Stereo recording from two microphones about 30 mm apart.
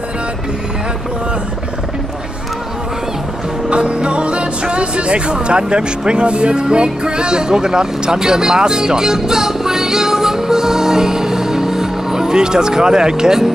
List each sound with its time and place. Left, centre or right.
3.7 s speech: right; by 13.5 s centre